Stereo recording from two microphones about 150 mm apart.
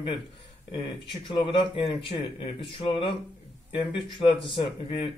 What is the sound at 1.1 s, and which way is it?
Speech, 35° left (ahead or behind).